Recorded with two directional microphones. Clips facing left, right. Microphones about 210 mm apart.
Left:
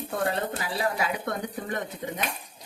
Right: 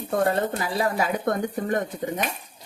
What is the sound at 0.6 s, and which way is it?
Speech, 45° right (ahead or behind).